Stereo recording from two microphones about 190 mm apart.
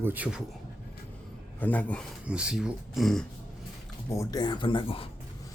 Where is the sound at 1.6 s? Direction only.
10° left (ahead or behind).